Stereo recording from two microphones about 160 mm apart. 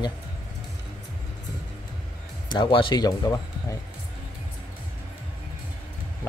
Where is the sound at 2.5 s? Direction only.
30° left (ahead or behind).